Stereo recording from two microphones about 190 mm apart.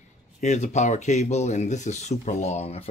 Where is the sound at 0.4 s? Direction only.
35° left (ahead or behind).